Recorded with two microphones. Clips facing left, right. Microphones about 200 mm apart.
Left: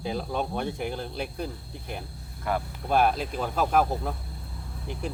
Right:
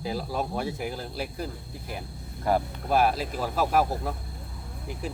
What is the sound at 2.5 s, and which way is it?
Speech, 40° right (ahead or behind).